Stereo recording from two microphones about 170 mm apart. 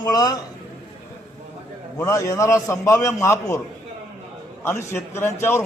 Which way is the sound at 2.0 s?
20° left (ahead or behind).